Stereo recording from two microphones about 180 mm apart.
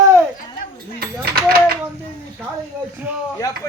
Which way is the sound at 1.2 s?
55° right (ahead or behind).